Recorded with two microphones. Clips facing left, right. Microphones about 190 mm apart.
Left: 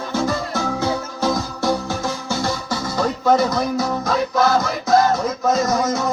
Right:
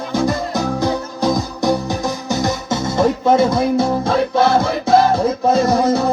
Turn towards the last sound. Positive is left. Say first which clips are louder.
# right 5 dB
turn(degrees=-30)  # may be behind; listen again after turning